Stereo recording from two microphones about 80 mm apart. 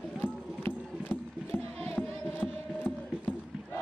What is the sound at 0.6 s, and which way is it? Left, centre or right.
Horse, left.